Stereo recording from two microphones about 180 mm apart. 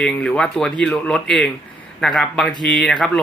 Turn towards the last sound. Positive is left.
turn(degrees=0)  # may be behind; listen again after turning